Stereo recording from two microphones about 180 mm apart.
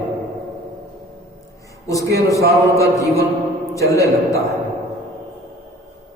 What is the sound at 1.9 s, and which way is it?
A man's voice, 20° left (ahead or behind).